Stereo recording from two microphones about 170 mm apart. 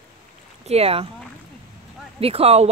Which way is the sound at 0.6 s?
35° right (ahead or behind).